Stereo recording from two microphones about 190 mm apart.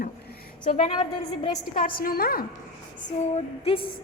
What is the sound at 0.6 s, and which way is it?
A woman's voice, 45° left (ahead or behind).